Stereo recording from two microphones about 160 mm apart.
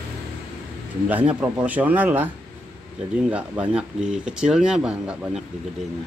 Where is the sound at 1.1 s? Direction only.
10° right (ahead or behind).